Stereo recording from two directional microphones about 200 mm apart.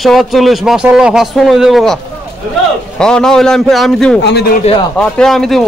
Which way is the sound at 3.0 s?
5° left (ahead or behind).